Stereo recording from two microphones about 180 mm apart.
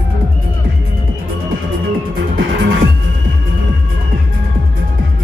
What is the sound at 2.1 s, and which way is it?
Music, 90° right.